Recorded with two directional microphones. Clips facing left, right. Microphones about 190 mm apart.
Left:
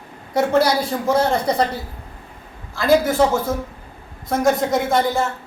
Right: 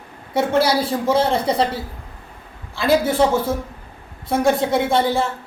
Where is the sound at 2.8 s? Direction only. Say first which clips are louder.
Left 1 dB; 30° right (ahead or behind).